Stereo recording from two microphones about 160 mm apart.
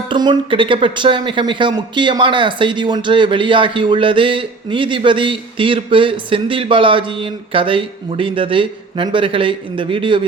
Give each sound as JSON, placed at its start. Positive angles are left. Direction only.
{"t": 0.1, "sound": "speech", "side_deg": -30}